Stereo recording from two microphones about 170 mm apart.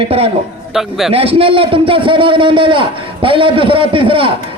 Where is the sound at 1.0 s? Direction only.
35° right (ahead or behind).